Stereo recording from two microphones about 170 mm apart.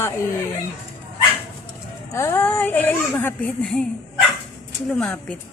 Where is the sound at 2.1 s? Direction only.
15° left (ahead or behind).